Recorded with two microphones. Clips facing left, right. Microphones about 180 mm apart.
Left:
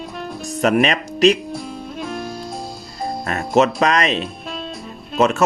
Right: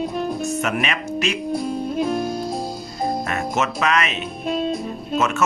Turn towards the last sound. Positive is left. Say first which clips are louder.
# left 4 dB
turn(degrees=35)  # may be behind; listen again after turning